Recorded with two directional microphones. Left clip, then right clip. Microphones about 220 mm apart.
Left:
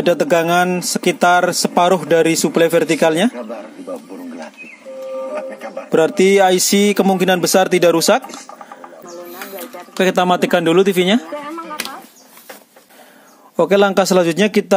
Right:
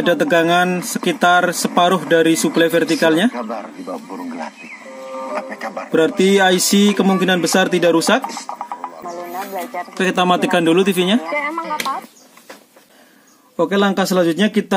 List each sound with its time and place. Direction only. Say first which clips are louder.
0.0 s speech: even; 25° left (ahead or behind)
3.3 s a man's voice: right 3 dB; 45° right (ahead or behind)
4.1 s wild animals: right 3 dB; 45° right (ahead or behind)
5.2 s printer: even; 45° right (ahead or behind)
5.9 s speech: left 2 dB; 30° left (ahead or behind)
9.9 s speech: left 2 dB; 25° left (ahead or behind)
11.2 s a sound: right 6 dB; 45° right (ahead or behind)
13.6 s speech: left 4 dB; 35° left (ahead or behind)